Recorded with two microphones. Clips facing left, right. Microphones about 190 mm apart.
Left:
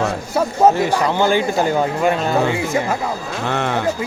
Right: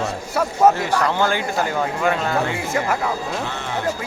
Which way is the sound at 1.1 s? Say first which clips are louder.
Left 4 dB; 25° left (ahead or behind).